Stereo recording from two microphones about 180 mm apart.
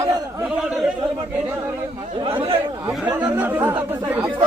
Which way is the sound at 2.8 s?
10° right (ahead or behind).